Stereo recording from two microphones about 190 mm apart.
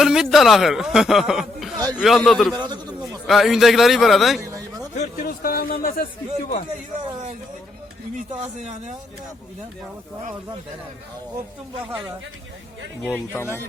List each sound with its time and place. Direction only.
0.0 s speech: centre (ahead or behind)
2.6 s speech: 20° right (ahead or behind)
3.1 s speech: centre (ahead or behind)
4.9 s speech: 50° left (ahead or behind)
13.3 s speech: 10° left (ahead or behind)